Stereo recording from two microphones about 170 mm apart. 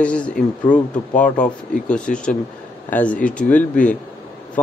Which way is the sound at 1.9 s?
5° left (ahead or behind).